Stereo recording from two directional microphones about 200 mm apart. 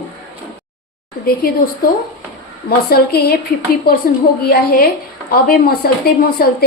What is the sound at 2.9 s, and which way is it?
Speech, 55° left (ahead or behind).